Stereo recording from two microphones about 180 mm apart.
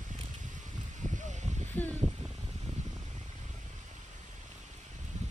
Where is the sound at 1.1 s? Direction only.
40° right (ahead or behind).